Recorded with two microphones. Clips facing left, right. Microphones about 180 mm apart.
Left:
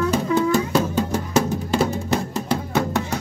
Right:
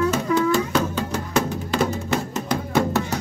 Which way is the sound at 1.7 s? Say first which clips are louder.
Left 1 dB; 35° left (ahead or behind).